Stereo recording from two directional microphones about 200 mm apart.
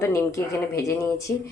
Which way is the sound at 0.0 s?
15° left (ahead or behind).